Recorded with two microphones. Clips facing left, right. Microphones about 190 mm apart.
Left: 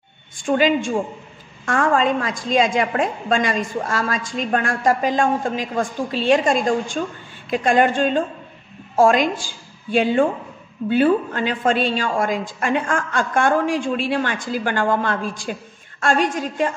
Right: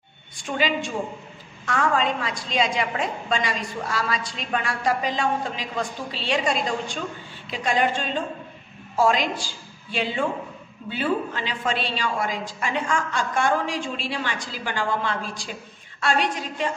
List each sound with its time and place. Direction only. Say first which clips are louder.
0.5 s a woman's voice: left 8 dB; 50° left (ahead or behind)